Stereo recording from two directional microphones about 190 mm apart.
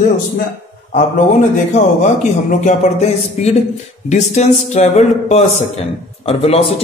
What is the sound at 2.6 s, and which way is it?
Speech, 35° left (ahead or behind).